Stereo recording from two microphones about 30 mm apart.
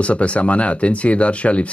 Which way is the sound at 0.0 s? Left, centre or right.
Left.